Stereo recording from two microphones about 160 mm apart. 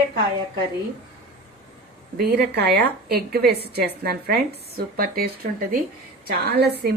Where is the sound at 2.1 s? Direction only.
85° right; by 5.8 s 70° right (ahead or behind).